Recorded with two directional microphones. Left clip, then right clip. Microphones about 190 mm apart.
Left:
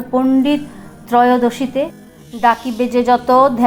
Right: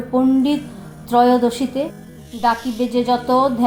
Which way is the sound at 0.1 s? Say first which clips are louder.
Left 2 dB; 15° left (ahead or behind).